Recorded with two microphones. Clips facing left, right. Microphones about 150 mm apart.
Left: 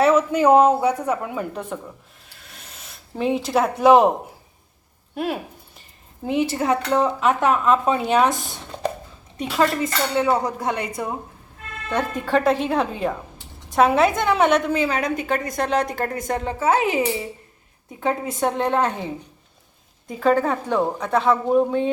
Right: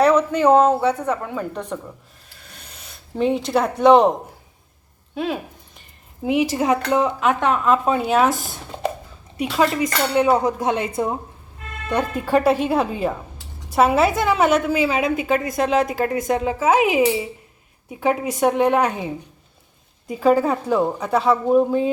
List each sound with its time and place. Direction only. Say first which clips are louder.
0.0 s a woman's voice: right 1 dB; 5° left (ahead or behind)
2.4 s a sound: even; centre (ahead or behind)
6.2 s speech: right 2 dB; 10° right (ahead or behind)
7.2 s a woman's voice: even; centre (ahead or behind)
9.4 s dishes: right 1 dB; 10° right (ahead or behind)
11.9 s a woman's voice: right 2 dB; 10° right (ahead or behind)
20.1 s a woman's voice: right 2 dB; 10° right (ahead or behind)